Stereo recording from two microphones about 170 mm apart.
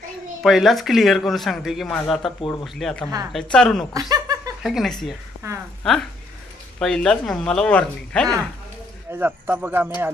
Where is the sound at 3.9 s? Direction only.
20° right (ahead or behind).